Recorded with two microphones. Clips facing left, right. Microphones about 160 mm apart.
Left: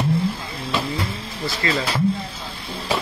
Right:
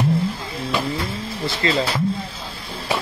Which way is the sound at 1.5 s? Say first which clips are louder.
Right 2 dB; 25° right (ahead or behind).